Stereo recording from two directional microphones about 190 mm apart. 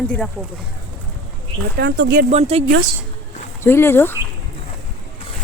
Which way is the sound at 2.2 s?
30° right (ahead or behind).